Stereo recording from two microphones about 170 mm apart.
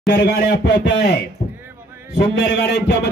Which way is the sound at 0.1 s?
80° left.